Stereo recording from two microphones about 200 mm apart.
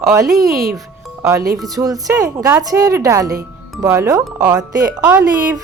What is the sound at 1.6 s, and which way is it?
A woman's voice, 20° right (ahead or behind).